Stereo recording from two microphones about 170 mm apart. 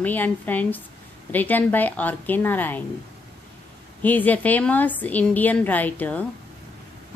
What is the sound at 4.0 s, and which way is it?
A woman's voice, 10° left (ahead or behind).